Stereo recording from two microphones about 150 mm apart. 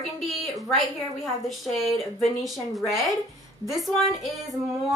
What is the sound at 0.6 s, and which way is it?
A woman's voice, centre (ahead or behind).